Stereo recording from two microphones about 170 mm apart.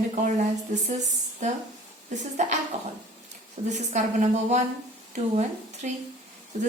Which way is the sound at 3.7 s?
40° right (ahead or behind).